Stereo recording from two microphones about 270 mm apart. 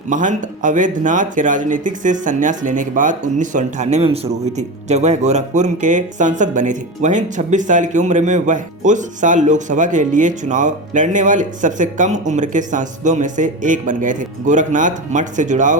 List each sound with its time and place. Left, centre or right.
0.1 s speech: right